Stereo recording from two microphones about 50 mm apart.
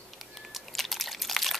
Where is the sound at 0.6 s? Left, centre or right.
Centre.